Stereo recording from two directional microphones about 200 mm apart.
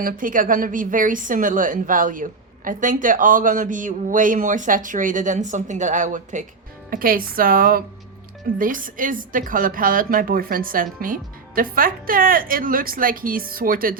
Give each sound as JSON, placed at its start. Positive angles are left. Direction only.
{"t": 0.0, "sound": "a woman's voice", "side_deg": -45}